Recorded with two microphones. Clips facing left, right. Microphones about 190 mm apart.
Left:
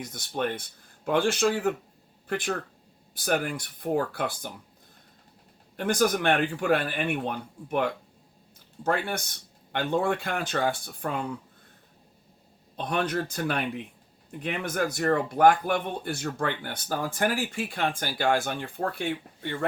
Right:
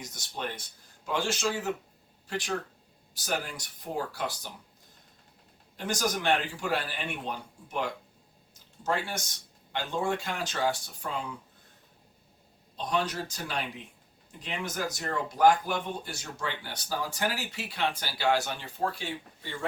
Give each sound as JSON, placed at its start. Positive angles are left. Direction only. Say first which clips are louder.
{"t": 0.0, "sound": "speech", "louder": "left 7 dB", "side_deg": 55}
{"t": 5.7, "sound": "speech", "louder": "left 7 dB", "side_deg": 55}
{"t": 12.7, "sound": "speech", "louder": "left 3 dB", "side_deg": 55}